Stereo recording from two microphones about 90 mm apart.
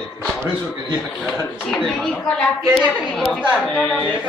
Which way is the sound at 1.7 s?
Centre (ahead or behind).